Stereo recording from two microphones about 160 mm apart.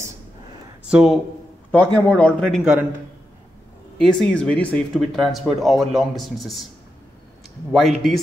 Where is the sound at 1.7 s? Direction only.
10° left (ahead or behind).